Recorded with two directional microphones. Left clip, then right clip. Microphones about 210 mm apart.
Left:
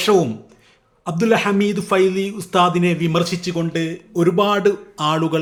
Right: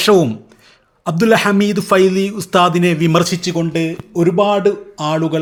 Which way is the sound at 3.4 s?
20° right (ahead or behind).